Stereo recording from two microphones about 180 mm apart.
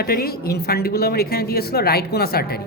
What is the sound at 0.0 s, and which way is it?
A woman's voice, 60° left (ahead or behind).